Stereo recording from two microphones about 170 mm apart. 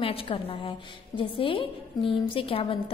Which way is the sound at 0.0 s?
30° left (ahead or behind).